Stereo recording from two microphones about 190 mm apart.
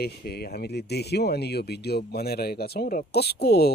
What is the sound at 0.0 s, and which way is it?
Speech, 55° left (ahead or behind).